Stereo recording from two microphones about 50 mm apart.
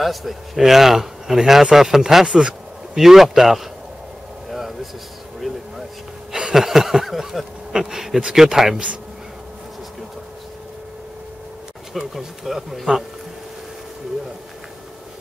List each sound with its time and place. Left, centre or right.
0.0 s speech: centre
2.2 s a sound: centre
3.0 s speech: centre
4.5 s a sound: centre
6.3 s chuckle: centre
7.7 s speech: centre
11.9 s speech: centre